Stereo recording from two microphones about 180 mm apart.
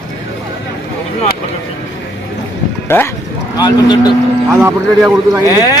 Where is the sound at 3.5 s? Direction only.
25° left (ahead or behind).